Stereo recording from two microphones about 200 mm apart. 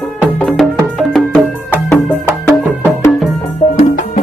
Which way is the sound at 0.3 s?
Centre (ahead or behind).